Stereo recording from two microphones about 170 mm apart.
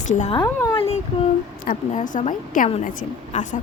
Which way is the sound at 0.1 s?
45° left (ahead or behind).